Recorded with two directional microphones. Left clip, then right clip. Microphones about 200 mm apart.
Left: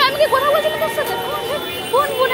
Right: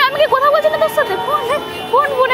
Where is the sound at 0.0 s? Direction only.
15° right (ahead or behind).